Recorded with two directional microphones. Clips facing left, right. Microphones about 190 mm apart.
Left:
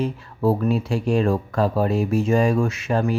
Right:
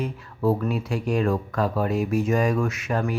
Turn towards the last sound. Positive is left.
turn(degrees=30)  # may be behind; listen again after turning